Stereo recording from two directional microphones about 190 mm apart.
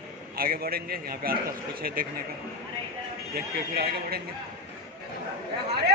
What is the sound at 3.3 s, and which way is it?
Speech, 55° right (ahead or behind).